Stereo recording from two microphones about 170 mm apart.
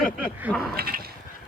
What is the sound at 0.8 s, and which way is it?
Speech, 60° right (ahead or behind).